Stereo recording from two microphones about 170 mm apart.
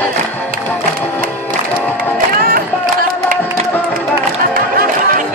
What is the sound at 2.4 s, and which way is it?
Music, 60° right (ahead or behind).